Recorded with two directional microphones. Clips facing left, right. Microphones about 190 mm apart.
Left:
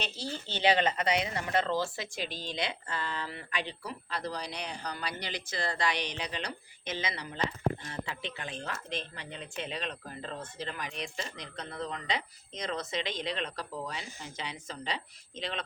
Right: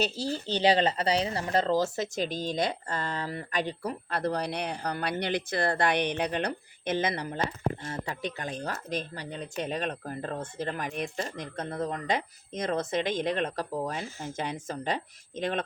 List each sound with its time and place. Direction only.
0.0 s speech: 40° right (ahead or behind)